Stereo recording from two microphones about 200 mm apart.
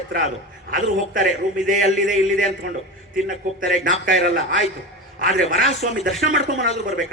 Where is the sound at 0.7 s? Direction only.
45° right (ahead or behind).